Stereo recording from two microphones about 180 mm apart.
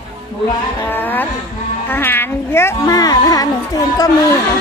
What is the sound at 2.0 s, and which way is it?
Speech, 10° left (ahead or behind).